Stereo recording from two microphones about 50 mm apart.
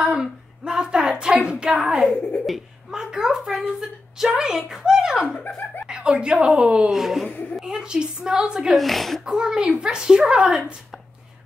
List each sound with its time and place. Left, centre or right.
0.0 s speech: centre
1.7 s a child's voice: centre
6.9 s speech: centre
8.7 s speech: centre
9.2 s speech: centre